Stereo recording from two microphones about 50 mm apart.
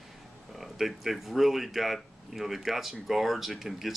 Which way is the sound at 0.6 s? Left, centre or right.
Centre.